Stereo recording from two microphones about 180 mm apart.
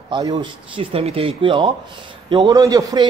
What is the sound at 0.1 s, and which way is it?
A man's voice, 25° right (ahead or behind).